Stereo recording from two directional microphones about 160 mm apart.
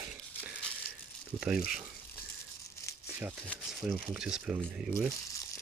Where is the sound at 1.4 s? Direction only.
5° right (ahead or behind).